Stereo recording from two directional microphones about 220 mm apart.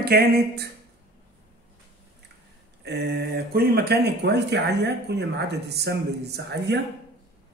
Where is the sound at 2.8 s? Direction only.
50° right (ahead or behind).